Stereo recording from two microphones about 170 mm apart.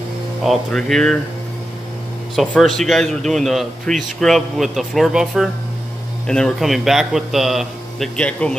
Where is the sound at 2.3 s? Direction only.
Centre (ahead or behind).